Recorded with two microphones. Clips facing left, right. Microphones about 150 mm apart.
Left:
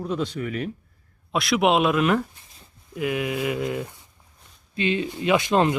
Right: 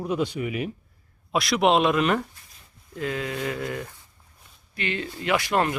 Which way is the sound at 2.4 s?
30° left (ahead or behind).